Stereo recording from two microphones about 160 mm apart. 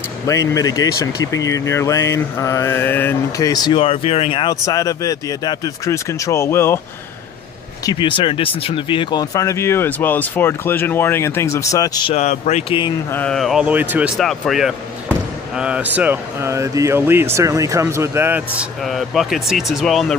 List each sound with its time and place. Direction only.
0.3 s speech: 20° left (ahead or behind)
4.6 s speech: 20° left (ahead or behind)
7.8 s speech: 30° left (ahead or behind)
12.1 s speech: 45° left (ahead or behind)
13.1 s speech: 5° left (ahead or behind); by 18.4 s 15° right (ahead or behind)
18.6 s speech: centre (ahead or behind)